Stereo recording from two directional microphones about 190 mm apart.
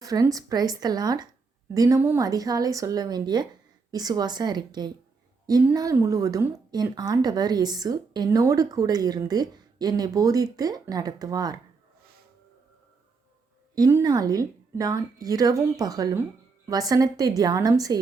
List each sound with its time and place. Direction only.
0.0 s speech: 20° right (ahead or behind)
13.7 s speech: 20° right (ahead or behind)